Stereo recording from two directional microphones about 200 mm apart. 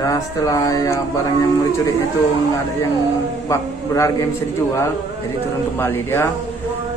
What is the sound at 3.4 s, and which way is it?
Speech, 15° left (ahead or behind).